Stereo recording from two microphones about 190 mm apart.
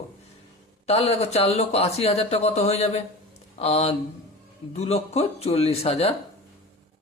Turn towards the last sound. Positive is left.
turn(degrees=30)  # may be behind; listen again after turning